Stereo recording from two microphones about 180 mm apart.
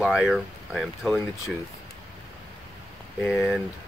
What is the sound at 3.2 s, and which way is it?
Speech, centre (ahead or behind).